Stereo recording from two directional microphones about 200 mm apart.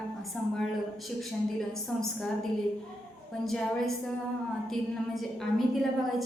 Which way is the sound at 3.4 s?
Centre (ahead or behind).